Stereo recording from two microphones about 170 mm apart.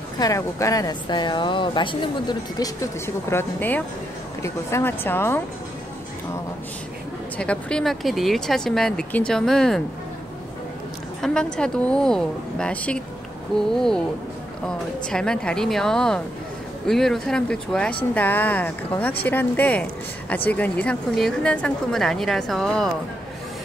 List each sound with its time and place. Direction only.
0.2 s speech: 20° left (ahead or behind)
7.3 s speech: 5° left (ahead or behind)
11.1 s a woman's voice: 5° left (ahead or behind)
15.0 s speech: 5° left (ahead or behind)